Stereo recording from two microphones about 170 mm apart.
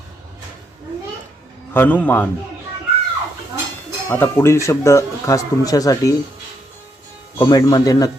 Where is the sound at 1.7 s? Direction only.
10° left (ahead or behind).